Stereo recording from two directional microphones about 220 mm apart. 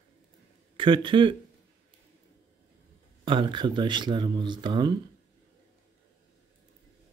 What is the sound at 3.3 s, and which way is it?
Speech, 20° right (ahead or behind).